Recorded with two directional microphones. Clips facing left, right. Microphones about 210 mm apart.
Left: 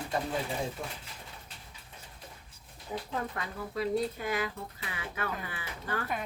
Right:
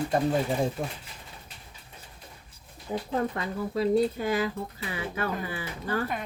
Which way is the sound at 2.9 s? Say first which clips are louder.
Right 7 dB; 30° right (ahead or behind).